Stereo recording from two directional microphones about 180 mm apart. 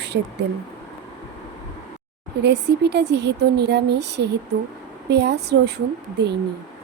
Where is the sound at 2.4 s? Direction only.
70° right (ahead or behind).